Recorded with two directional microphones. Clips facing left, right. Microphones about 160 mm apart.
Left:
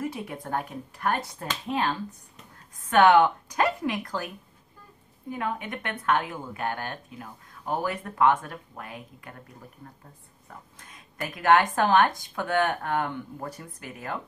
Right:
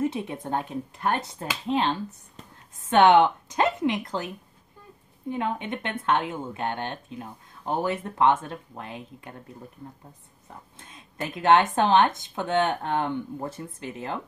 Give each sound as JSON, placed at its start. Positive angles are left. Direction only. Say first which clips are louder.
{"t": 0.0, "sound": "speech", "louder": "right 5 dB", "side_deg": -25}
{"t": 5.3, "sound": "speech", "louder": "right 3 dB", "side_deg": -25}
{"t": 10.8, "sound": "speech", "louder": "right 2 dB", "side_deg": -25}